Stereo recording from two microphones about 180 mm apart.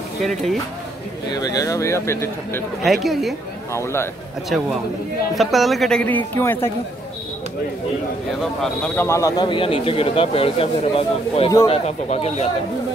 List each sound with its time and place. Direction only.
0.2 s a woman's voice: centre (ahead or behind)
1.3 s speech: 20° left (ahead or behind)
2.8 s a woman's voice: centre (ahead or behind)
3.7 s speech: 15° left (ahead or behind)
5.3 s a woman's voice: centre (ahead or behind)
8.4 s a man's voice: 5° left (ahead or behind); by 12.4 s 35° left (ahead or behind)